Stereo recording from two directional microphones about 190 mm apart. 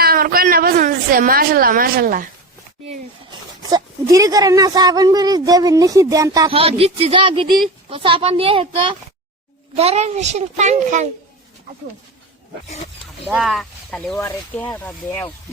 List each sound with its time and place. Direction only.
0.0 s a woman's voice: 50° right (ahead or behind)
3.2 s a woman's voice: 20° right (ahead or behind); by 11.1 s 40° right (ahead or behind)
13.2 s speech: centre (ahead or behind)